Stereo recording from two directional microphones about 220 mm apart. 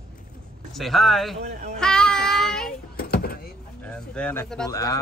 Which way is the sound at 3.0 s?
45° left (ahead or behind).